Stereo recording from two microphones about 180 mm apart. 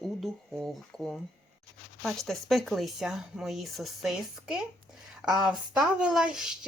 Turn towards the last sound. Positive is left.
turn(degrees=-5)  # may be behind; listen again after turning